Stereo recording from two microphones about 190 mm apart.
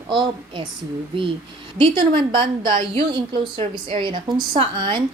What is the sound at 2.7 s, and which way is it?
A woman's voice, 25° right (ahead or behind).